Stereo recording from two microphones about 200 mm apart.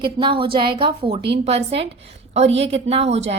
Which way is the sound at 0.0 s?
25° right (ahead or behind).